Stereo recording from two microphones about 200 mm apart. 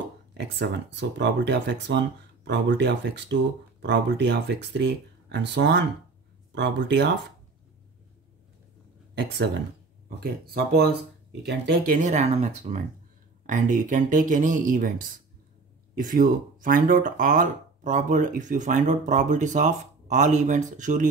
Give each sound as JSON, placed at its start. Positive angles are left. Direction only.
{"t": 0.4, "sound": "speech", "side_deg": -60}
{"t": 10.0, "sound": "speech", "side_deg": -50}